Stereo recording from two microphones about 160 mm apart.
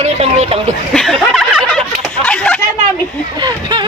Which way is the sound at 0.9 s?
Centre (ahead or behind).